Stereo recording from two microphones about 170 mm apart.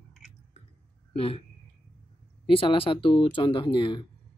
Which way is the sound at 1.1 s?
35° left (ahead or behind).